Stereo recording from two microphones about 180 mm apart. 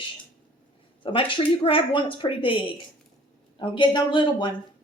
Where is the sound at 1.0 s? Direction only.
30° left (ahead or behind).